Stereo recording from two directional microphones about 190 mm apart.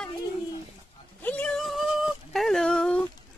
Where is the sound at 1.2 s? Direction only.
5° left (ahead or behind).